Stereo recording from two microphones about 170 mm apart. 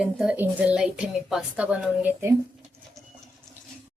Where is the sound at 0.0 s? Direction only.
5° right (ahead or behind).